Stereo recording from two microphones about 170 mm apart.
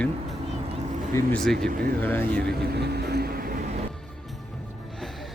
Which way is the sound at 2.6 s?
75° right (ahead or behind).